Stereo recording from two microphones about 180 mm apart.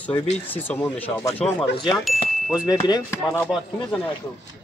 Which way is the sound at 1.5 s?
25° left (ahead or behind).